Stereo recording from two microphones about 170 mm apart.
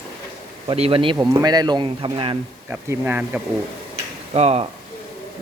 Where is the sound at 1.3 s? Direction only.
20° right (ahead or behind).